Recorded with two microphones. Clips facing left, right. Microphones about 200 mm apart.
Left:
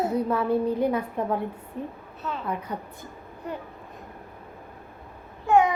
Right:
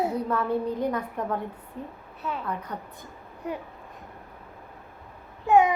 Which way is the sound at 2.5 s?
10° left (ahead or behind).